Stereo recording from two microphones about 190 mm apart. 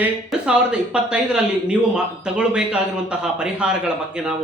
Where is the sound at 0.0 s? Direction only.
5° right (ahead or behind).